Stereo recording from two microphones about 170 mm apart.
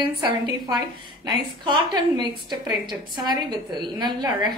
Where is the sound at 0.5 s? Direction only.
25° right (ahead or behind).